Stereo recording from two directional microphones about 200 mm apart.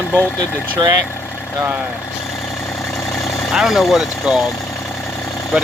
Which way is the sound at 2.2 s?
5° left (ahead or behind).